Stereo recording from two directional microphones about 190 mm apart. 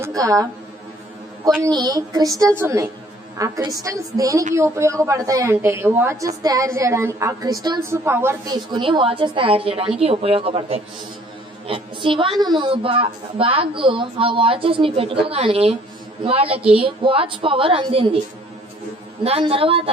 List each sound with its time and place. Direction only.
0.0 s a woman's voice: 15° right (ahead or behind)
1.6 s a woman's voice: 20° right (ahead or behind)
19.2 s a woman's voice: 30° right (ahead or behind)